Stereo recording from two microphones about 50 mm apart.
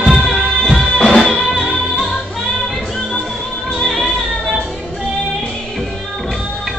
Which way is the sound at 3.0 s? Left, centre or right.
Left.